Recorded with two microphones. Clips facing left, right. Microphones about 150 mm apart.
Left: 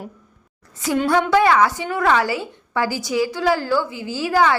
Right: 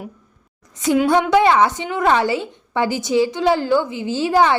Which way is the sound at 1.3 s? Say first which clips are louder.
Right 1 dB; 25° right (ahead or behind).